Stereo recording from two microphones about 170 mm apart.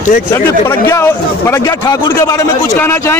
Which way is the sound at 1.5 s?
20° left (ahead or behind).